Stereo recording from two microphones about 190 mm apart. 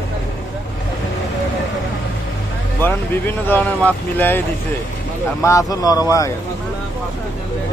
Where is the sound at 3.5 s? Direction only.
10° left (ahead or behind).